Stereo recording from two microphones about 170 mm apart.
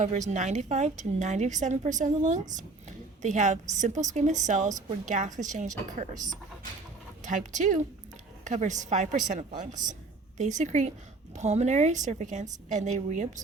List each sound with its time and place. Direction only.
0.0 s a woman's voice: 45° right (ahead or behind)
9.5 s a woman's voice: 25° right (ahead or behind)
10.3 s a woman's voice: 45° right (ahead or behind)